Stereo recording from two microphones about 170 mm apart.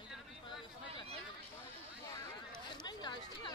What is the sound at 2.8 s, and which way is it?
Chatter, 25° left (ahead or behind).